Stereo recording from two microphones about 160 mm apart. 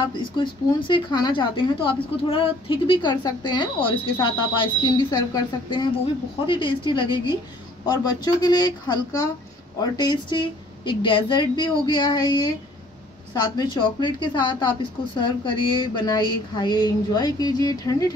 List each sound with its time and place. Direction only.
0.0 s a woman's voice: 30° left (ahead or behind)